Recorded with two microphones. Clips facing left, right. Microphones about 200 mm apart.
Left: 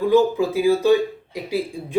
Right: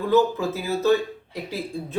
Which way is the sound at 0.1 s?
10° left (ahead or behind).